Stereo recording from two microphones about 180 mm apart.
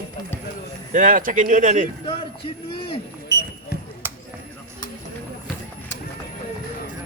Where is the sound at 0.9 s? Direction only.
45° right (ahead or behind).